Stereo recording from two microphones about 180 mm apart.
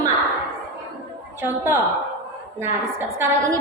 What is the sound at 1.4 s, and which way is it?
Speech, 10° right (ahead or behind).